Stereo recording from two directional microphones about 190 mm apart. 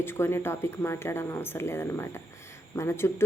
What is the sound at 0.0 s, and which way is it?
Speech, 10° left (ahead or behind).